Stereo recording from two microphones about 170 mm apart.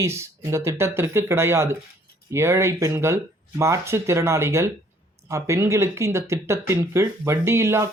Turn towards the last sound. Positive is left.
turn(degrees=-15)  # may be behind; listen again after turning